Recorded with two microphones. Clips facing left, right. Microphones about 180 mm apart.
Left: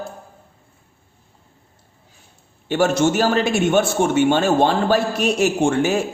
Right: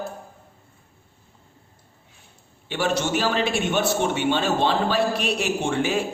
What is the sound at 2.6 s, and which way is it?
A man's voice, 45° left (ahead or behind).